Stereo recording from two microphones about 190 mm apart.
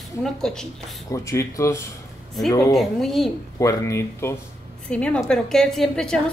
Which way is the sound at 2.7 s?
Centre (ahead or behind).